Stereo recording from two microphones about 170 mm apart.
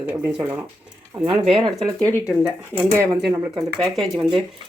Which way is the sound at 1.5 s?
25° right (ahead or behind).